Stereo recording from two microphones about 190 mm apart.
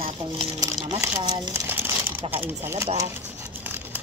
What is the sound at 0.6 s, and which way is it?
Speech, 20° right (ahead or behind).